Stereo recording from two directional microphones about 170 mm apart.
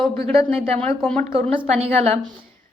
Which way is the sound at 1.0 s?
5° left (ahead or behind).